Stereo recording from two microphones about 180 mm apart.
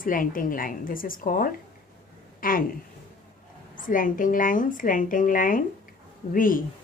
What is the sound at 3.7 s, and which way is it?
A woman's voice, 45° left (ahead or behind).